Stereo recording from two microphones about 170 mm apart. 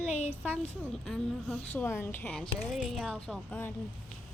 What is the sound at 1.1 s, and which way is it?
A woman's voice, 5° left (ahead or behind).